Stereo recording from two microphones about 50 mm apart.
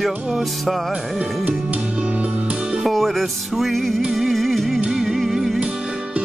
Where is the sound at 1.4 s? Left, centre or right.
Right.